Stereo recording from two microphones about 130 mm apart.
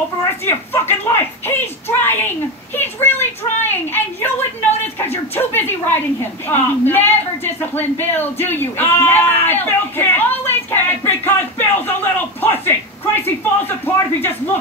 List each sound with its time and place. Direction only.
0.2 s a woman's voice: 20° left (ahead or behind)